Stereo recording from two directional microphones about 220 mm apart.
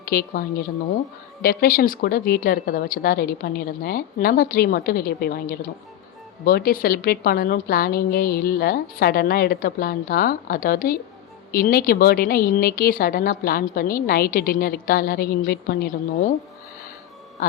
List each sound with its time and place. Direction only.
0.1 s a woman's voice: 45° left (ahead or behind)